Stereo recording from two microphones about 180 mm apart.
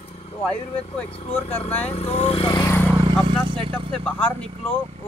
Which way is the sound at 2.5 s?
20° left (ahead or behind).